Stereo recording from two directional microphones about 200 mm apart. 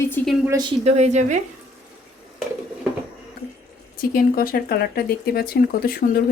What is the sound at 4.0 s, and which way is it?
Speech, 45° left (ahead or behind).